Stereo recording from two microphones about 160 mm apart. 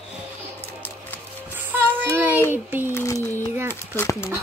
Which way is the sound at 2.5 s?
15° right (ahead or behind).